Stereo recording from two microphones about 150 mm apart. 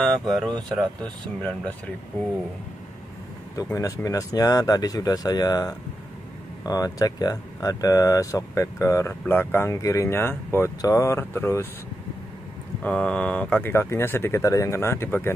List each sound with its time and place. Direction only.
0.0 s speech: 5° left (ahead or behind)
3.5 s speech: 20° left (ahead or behind)
12.8 s speech: 5° left (ahead or behind)